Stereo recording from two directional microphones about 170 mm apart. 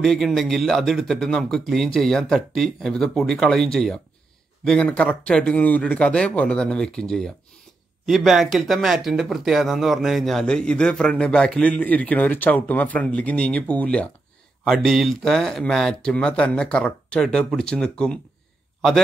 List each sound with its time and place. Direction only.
0.0 s speech: centre (ahead or behind)